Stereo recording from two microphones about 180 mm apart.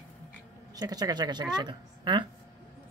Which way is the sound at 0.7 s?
20° right (ahead or behind).